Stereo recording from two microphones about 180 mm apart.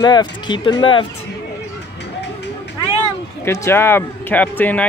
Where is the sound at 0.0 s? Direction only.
25° left (ahead or behind).